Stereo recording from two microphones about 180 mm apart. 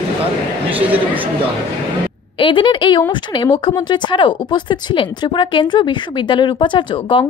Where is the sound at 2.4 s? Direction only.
30° left (ahead or behind).